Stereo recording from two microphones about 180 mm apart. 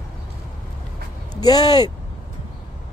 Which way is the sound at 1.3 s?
20° left (ahead or behind).